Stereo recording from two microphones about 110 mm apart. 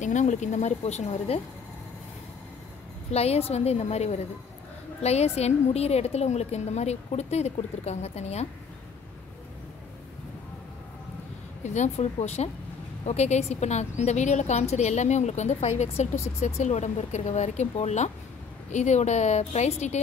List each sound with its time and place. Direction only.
0.0 s a woman's voice: 90° left
3.1 s a woman's voice: 70° left (ahead or behind)
11.6 s a woman's voice: 90° left